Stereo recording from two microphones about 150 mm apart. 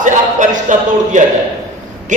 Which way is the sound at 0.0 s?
55° right (ahead or behind).